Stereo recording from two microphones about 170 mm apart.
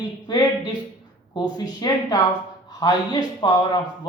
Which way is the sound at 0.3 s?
25° left (ahead or behind).